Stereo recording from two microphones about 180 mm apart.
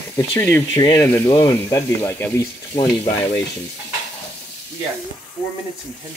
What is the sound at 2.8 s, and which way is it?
Speech, 25° left (ahead or behind).